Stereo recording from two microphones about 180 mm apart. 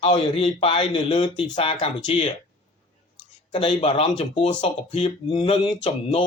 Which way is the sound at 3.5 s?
30° left (ahead or behind).